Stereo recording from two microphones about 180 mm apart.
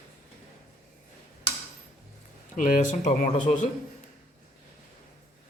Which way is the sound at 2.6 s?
45° left (ahead or behind).